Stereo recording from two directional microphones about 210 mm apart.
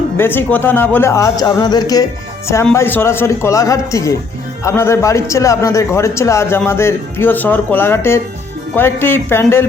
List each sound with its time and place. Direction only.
0.2 s a man's voice: 10° left (ahead or behind)